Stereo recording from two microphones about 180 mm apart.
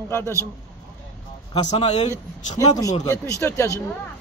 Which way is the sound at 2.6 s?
20° left (ahead or behind).